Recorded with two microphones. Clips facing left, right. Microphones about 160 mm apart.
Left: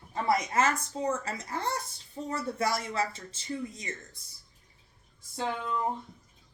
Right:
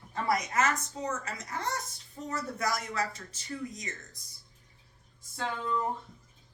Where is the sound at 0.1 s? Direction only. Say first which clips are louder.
Left 2 dB; 25° left (ahead or behind).